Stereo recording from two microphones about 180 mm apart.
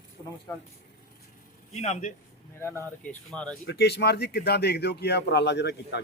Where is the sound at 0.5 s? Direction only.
10° left (ahead or behind).